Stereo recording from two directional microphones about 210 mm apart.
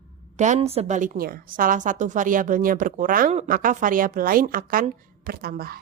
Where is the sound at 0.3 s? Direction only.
35° right (ahead or behind).